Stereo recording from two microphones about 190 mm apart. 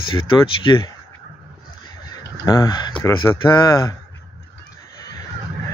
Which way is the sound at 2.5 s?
20° left (ahead or behind).